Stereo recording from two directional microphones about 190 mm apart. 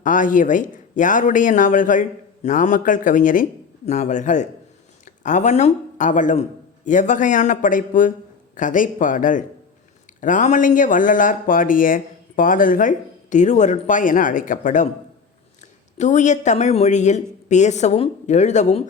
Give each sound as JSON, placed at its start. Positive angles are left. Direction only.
{"t": 0.0, "sound": "a woman's voice", "side_deg": 45}
{"t": 16.0, "sound": "a woman's voice", "side_deg": 40}